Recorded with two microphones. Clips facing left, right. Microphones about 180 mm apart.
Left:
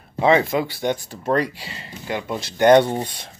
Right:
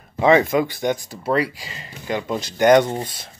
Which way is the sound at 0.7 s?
15° right (ahead or behind).